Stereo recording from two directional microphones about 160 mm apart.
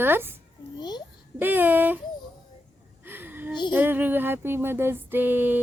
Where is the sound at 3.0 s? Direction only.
15° right (ahead or behind).